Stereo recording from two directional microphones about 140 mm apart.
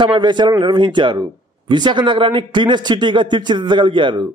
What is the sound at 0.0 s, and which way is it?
A man's voice, 35° right (ahead or behind).